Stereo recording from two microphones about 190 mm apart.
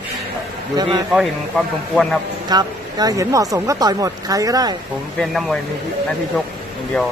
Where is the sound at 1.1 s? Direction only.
Centre (ahead or behind).